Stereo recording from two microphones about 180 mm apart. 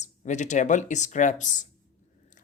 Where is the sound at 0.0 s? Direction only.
40° left (ahead or behind).